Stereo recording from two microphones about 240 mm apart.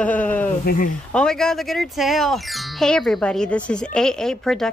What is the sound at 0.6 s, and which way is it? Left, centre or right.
Speech, left.